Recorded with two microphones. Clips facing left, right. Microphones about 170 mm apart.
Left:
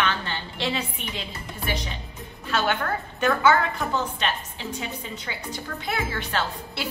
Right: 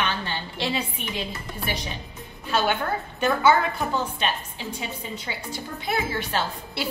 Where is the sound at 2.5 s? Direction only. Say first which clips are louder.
Right 1 dB; 15° right (ahead or behind).